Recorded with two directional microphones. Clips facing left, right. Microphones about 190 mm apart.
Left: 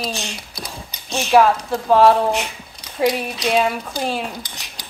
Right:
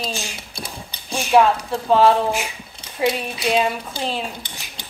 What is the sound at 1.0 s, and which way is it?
A woman's voice, 10° right (ahead or behind).